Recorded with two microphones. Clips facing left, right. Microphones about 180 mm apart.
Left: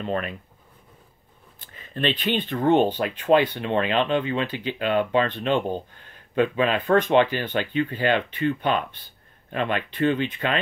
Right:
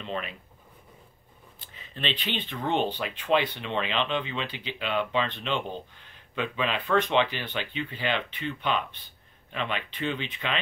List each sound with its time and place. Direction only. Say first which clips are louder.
0.0 s speech: left 7 dB; 50° left (ahead or behind)
1.6 s speech: left 8 dB; 50° left (ahead or behind)